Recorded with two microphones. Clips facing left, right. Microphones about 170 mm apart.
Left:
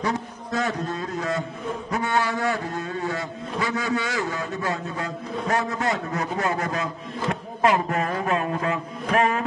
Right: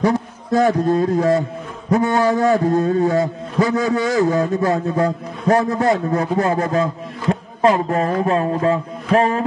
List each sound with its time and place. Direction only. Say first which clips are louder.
0.0 s a man's voice: right 8 dB; 35° right (ahead or behind)